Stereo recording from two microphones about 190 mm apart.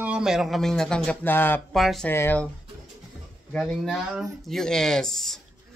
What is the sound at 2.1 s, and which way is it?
Speech, 10° left (ahead or behind).